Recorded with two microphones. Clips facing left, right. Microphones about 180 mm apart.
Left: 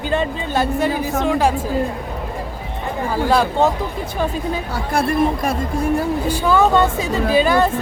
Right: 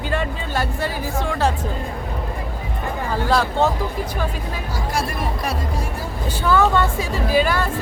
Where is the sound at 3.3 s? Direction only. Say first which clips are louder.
Left 2 dB; 15° left (ahead or behind).